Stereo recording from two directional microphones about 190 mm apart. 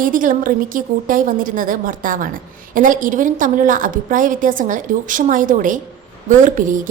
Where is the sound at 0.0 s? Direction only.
45° right (ahead or behind).